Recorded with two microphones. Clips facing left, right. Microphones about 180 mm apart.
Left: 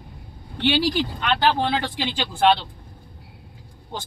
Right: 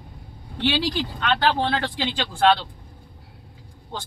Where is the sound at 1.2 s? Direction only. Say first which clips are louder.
Right 1 dB; 15° left (ahead or behind).